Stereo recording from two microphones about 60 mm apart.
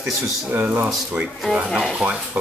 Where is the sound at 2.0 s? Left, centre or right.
Centre.